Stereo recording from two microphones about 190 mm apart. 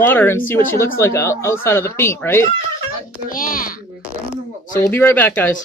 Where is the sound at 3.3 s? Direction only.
45° left (ahead or behind).